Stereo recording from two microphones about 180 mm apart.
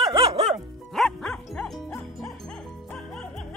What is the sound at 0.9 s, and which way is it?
Music, centre (ahead or behind).